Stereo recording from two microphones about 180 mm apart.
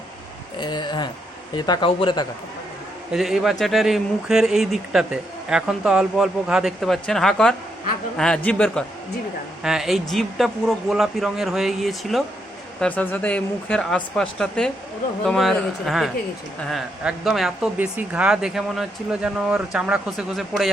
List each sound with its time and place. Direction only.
0.6 s speech: 25° left (ahead or behind)
3.1 s speech: centre (ahead or behind)